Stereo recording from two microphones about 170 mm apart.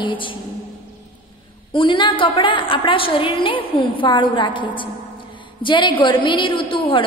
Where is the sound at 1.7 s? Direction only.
30° left (ahead or behind).